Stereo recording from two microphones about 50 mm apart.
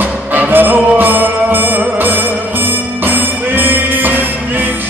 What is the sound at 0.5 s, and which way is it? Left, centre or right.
Music, right.